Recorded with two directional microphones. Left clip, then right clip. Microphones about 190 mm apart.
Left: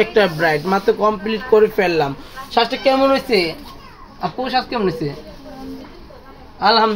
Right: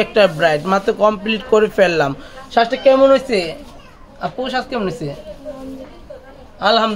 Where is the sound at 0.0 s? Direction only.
15° right (ahead or behind).